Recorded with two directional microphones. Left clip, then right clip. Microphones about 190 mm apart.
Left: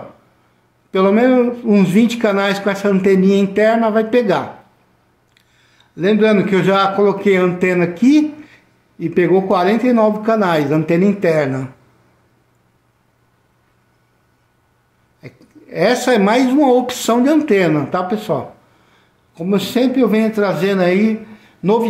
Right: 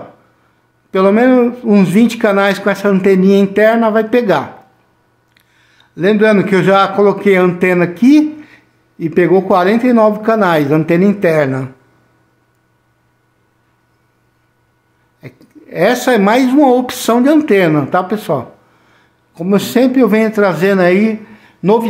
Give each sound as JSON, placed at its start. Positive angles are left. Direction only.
{"t": 0.9, "sound": "a man's voice", "side_deg": -20}
{"t": 15.1, "sound": "a man's voice", "side_deg": -20}